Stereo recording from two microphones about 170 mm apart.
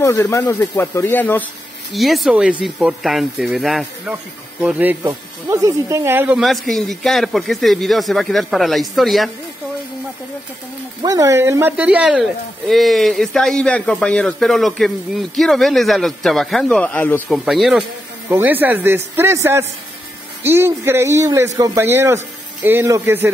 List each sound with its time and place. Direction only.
0.0 s speech: 15° left (ahead or behind)
2.0 s a man's voice: centre (ahead or behind)
11.0 s a man's voice: 20° right (ahead or behind); by 17.2 s 10° left (ahead or behind)
17.3 s a man's voice: centre (ahead or behind)
18.3 s speech: 10° right (ahead or behind)